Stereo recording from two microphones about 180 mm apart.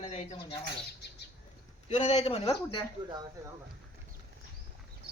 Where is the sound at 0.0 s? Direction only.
35° left (ahead or behind).